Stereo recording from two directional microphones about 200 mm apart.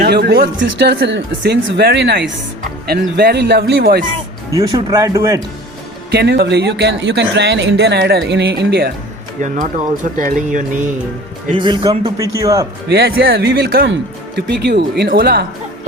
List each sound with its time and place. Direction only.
0.0 s speech: 55° right (ahead or behind)
4.5 s a man's voice: 15° right (ahead or behind)
6.1 s speech: 55° right (ahead or behind)
9.4 s speech: 40° right (ahead or behind)
11.5 s a man's voice: 25° right (ahead or behind)
12.9 s speech: 50° right (ahead or behind)